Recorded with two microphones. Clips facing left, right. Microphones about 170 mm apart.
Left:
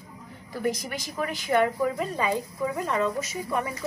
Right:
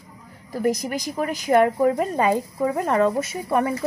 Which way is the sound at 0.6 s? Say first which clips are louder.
Right 6 dB; 40° right (ahead or behind).